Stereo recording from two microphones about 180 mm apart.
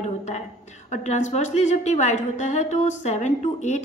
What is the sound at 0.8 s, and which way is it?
A woman's voice, 40° left (ahead or behind).